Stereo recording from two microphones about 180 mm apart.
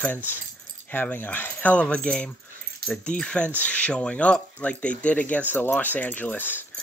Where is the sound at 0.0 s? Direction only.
10° left (ahead or behind).